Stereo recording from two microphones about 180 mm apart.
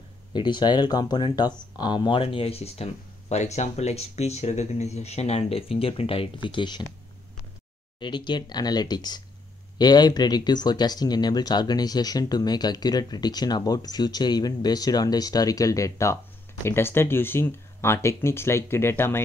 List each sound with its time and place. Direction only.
0.3 s speech: 25° left (ahead or behind)
8.0 s speech: 25° left (ahead or behind)